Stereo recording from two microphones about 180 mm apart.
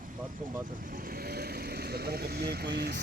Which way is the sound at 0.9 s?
55° right (ahead or behind).